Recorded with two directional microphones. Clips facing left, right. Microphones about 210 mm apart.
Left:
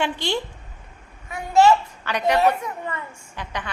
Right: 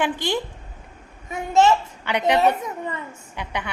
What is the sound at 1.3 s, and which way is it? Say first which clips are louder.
A child's voice: left 1 dB; 20° right (ahead or behind).